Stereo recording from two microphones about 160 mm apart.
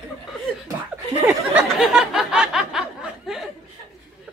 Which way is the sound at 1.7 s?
5° right (ahead or behind).